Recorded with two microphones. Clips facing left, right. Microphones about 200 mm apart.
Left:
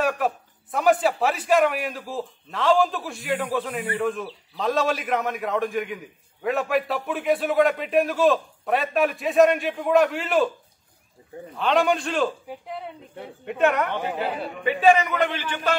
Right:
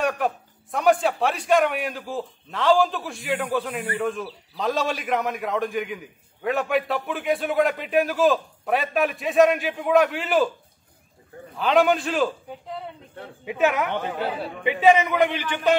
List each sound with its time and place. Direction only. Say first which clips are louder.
0.0 s a man's voice: even; centre (ahead or behind)
11.5 s a man's voice: right 2 dB; centre (ahead or behind)
13.9 s speech: even; 10° left (ahead or behind)
14.4 s a man's voice: even; 15° right (ahead or behind)